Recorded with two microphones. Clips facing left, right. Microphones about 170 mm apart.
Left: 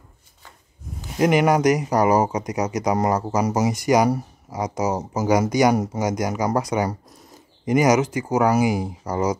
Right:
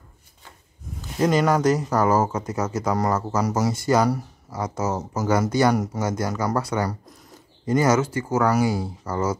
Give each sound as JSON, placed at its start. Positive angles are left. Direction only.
{"t": 1.1, "sound": "speech", "side_deg": 15}